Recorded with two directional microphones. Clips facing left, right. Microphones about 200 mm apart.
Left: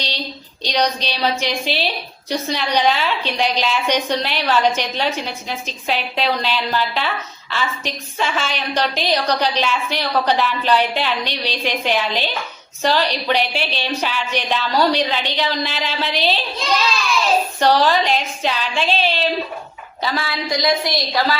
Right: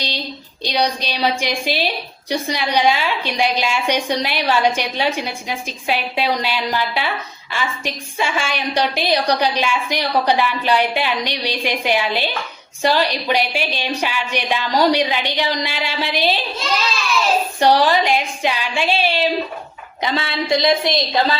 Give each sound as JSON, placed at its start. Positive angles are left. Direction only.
{"t": 0.6, "sound": "a woman's voice", "side_deg": -10}
{"t": 17.6, "sound": "a woman's voice", "side_deg": -15}
{"t": 20.0, "sound": "a woman's voice", "side_deg": -20}